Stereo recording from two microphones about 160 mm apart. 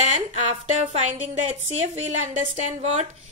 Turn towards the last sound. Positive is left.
turn(degrees=-45)  # may be behind; listen again after turning